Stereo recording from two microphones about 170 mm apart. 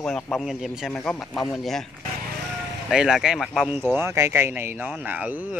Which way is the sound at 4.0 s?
15° right (ahead or behind).